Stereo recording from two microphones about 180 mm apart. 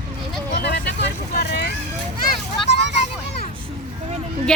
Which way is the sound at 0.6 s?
70° left (ahead or behind).